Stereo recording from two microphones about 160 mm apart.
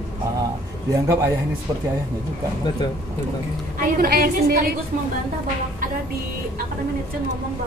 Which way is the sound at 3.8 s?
65° right (ahead or behind).